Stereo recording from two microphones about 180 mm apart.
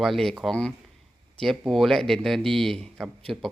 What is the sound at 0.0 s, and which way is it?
Speech, centre (ahead or behind).